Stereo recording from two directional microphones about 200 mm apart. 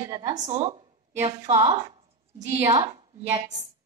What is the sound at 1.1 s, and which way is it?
Speech, 15° right (ahead or behind).